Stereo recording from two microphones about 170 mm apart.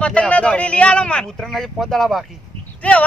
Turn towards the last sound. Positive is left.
turn(degrees=5)  # may be behind; listen again after turning